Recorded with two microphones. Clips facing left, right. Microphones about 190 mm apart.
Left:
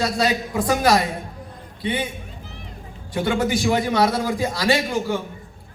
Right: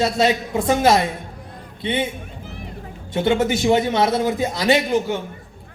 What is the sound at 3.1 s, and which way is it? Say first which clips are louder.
A man's voice: right 3 dB; 25° right (ahead or behind).